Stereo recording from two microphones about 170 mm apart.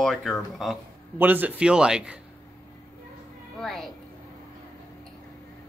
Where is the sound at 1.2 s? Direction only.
10° right (ahead or behind).